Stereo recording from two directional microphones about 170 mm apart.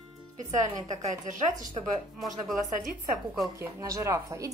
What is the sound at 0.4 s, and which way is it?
Speech, 45° right (ahead or behind).